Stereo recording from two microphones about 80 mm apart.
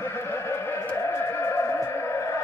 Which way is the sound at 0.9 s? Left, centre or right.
Left.